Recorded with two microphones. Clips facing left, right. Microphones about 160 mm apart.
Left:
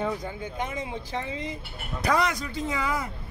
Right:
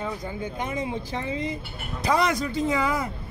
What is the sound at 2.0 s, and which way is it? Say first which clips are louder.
Speech: right 2 dB; 25° right (ahead or behind).